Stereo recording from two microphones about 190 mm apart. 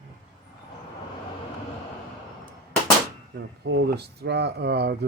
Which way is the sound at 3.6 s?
65° right (ahead or behind).